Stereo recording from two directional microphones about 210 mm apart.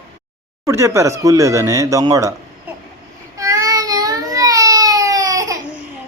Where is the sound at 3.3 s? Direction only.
15° right (ahead or behind).